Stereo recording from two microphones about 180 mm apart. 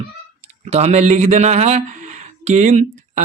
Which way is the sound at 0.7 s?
40° right (ahead or behind).